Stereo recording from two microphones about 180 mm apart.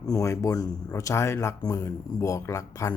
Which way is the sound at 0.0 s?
20° left (ahead or behind).